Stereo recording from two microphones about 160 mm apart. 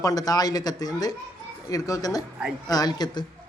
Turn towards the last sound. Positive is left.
turn(degrees=25)  # may be behind; listen again after turning